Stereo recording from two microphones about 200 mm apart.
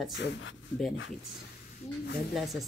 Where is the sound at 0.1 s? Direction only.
70° left (ahead or behind).